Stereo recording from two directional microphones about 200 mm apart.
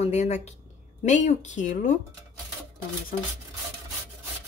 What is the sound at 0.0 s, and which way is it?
A woman's voice, 35° left (ahead or behind).